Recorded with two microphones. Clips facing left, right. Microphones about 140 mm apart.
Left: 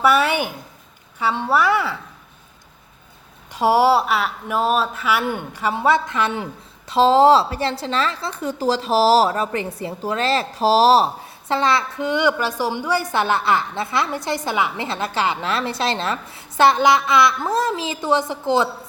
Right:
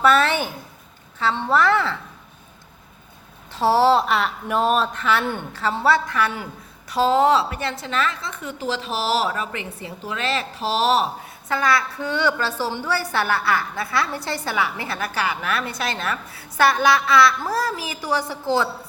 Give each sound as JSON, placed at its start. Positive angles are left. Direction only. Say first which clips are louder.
{"t": 0.0, "sound": "a woman's voice", "louder": "left 1 dB", "side_deg": 10}
{"t": 3.5, "sound": "speech", "louder": "left 1 dB", "side_deg": 15}